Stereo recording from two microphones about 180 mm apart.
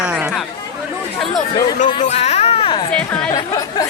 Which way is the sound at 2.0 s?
40° left (ahead or behind).